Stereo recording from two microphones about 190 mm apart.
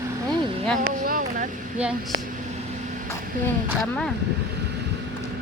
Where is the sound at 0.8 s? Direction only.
50° right (ahead or behind).